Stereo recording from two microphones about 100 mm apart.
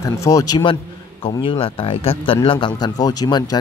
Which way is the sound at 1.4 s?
65° left (ahead or behind).